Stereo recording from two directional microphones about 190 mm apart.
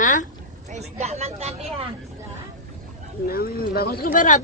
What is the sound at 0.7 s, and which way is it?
Speech, 35° right (ahead or behind).